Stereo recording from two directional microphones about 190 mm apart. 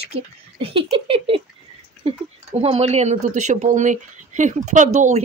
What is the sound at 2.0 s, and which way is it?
Speech, 30° right (ahead or behind).